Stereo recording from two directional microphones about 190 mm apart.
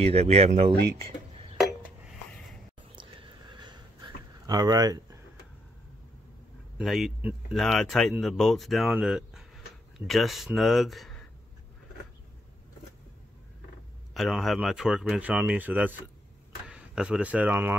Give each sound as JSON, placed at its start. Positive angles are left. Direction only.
{"t": 0.0, "sound": "speech", "side_deg": -35}
{"t": 3.0, "sound": "a sound", "side_deg": -25}
{"t": 6.8, "sound": "speech", "side_deg": 0}
{"t": 14.1, "sound": "speech", "side_deg": 0}